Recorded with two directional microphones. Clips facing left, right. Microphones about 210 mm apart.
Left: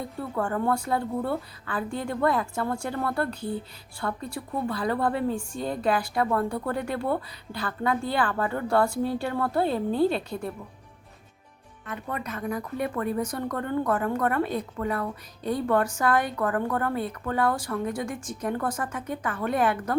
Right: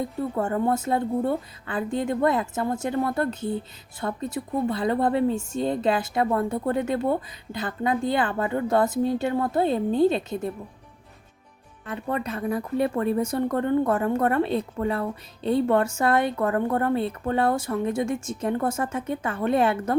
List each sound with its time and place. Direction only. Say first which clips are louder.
0.2 s speech: right 2 dB; 20° right (ahead or behind)
11.9 s speech: right 5 dB; 30° right (ahead or behind)